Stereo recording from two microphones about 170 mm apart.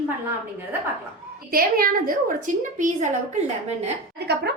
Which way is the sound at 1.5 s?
60° right (ahead or behind).